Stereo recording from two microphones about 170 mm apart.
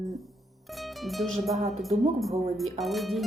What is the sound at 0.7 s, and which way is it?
Speech, centre (ahead or behind).